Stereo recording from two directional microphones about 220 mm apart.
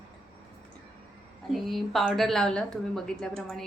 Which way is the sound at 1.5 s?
Centre (ahead or behind).